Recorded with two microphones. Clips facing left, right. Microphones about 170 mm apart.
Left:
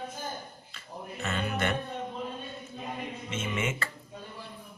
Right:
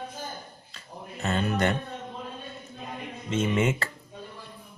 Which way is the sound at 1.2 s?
40° right (ahead or behind).